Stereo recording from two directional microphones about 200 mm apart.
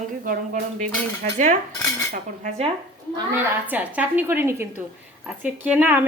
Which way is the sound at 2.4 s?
35° right (ahead or behind).